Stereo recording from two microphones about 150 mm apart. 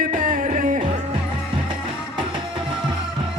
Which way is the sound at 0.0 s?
60° right (ahead or behind).